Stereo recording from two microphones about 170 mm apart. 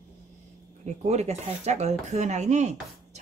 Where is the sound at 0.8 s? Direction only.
40° right (ahead or behind).